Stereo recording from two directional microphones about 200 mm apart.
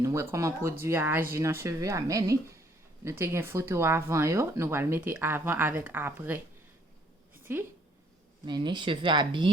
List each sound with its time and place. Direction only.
0.0 s speech: 15° right (ahead or behind)
7.5 s speech: 10° right (ahead or behind)
8.4 s speech: 25° right (ahead or behind)